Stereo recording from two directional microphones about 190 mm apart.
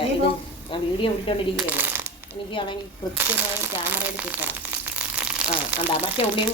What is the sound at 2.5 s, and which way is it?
Speech, 25° left (ahead or behind).